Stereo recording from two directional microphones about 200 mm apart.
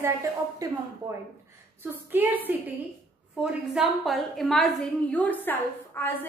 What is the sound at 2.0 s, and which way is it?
Speech, 10° right (ahead or behind).